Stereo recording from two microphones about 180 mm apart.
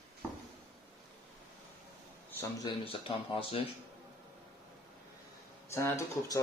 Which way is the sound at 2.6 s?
30° left (ahead or behind).